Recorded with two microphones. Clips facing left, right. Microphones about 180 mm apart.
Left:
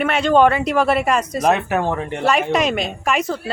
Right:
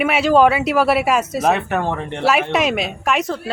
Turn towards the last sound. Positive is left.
turn(degrees=0)  # may be behind; listen again after turning